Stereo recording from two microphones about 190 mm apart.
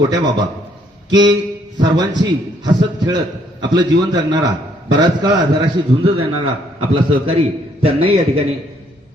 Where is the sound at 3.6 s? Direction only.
25° right (ahead or behind).